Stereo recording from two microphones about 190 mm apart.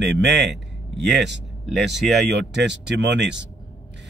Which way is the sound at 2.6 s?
65° right (ahead or behind).